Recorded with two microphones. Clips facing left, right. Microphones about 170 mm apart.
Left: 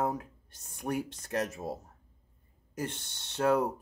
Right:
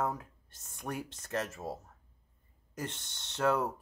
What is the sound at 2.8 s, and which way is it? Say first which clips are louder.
Speech: left 3 dB; 10° left (ahead or behind).